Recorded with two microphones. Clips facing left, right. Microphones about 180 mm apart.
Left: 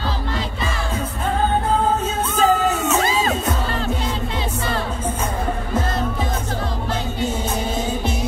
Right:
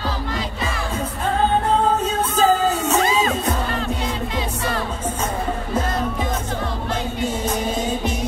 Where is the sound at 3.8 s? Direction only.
35° left (ahead or behind).